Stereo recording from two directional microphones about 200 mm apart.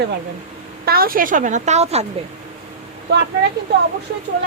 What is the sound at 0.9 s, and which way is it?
Speech, 50° right (ahead or behind).